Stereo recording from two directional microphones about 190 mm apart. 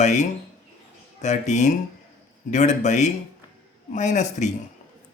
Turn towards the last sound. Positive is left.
turn(degrees=40)  # may be behind; listen again after turning